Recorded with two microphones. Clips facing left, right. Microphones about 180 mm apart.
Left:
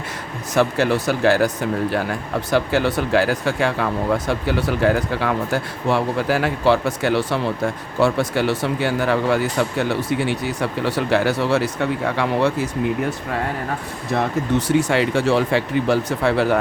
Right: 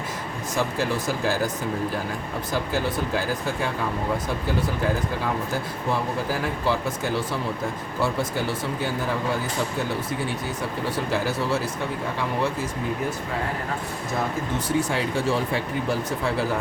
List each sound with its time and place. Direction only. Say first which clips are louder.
0.5 s speech: left 8 dB; 70° left (ahead or behind)
2.5 s speech: left 7 dB; 75° left (ahead or behind)
14.7 s speech: left 5 dB; 75° left (ahead or behind)